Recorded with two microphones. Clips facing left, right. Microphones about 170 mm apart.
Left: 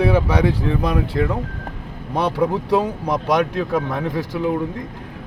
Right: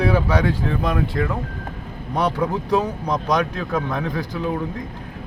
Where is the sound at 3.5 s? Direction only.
20° left (ahead or behind).